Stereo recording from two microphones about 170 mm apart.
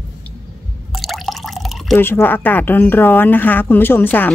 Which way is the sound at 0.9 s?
Centre (ahead or behind).